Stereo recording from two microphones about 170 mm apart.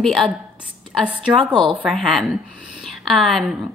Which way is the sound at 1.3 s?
30° right (ahead or behind).